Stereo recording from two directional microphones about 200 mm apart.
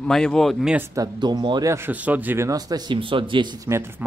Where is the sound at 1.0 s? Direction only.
20° right (ahead or behind).